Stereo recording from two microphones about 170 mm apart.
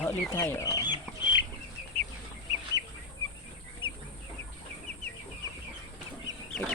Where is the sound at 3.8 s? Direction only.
30° left (ahead or behind).